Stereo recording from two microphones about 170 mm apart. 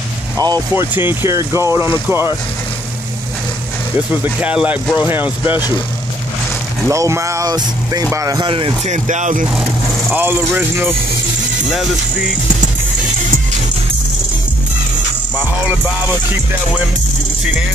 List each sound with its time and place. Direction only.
0.4 s speech: 25° right (ahead or behind)
4.1 s speech: 10° right (ahead or behind)
6.9 s speech: 15° right (ahead or behind)
8.8 s speech: 45° right (ahead or behind)
9.5 s speech: 5° right (ahead or behind)